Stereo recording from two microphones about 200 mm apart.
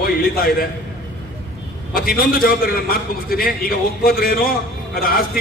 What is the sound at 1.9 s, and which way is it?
A man's voice, 45° left (ahead or behind).